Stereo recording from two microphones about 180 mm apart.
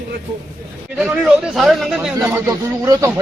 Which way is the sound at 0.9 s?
5° right (ahead or behind).